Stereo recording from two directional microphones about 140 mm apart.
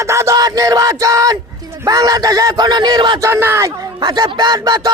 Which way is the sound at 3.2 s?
15° right (ahead or behind).